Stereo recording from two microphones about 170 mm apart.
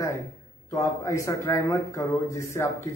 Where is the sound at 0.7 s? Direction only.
20° left (ahead or behind).